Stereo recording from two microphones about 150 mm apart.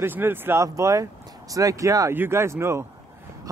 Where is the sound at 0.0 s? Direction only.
15° right (ahead or behind).